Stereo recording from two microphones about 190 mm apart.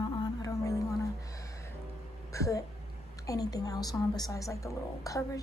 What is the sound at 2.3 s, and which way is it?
A woman's voice, 15° left (ahead or behind).